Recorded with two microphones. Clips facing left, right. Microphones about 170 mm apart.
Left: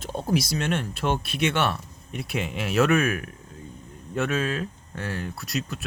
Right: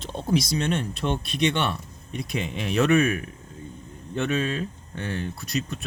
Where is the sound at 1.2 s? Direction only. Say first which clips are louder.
Even; 5° left (ahead or behind).